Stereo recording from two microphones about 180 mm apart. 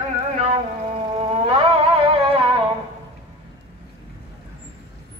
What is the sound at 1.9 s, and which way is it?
Music, 30° right (ahead or behind).